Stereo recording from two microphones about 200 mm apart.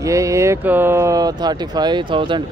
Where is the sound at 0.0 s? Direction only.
15° right (ahead or behind).